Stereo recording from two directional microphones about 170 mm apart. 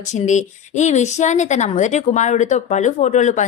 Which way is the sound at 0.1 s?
45° left (ahead or behind).